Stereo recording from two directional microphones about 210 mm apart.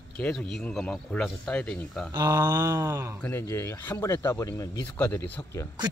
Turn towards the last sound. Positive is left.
turn(degrees=10)  # may be behind; listen again after turning